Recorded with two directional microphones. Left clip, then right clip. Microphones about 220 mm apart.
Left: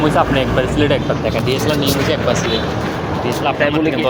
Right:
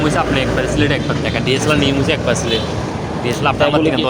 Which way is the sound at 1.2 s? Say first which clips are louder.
Right 4 dB; 35° right (ahead or behind).